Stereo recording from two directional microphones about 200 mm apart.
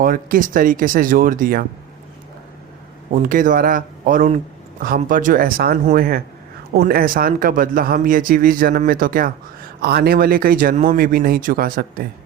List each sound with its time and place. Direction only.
0.0 s speech: 45° right (ahead or behind)
3.1 s speech: 40° right (ahead or behind)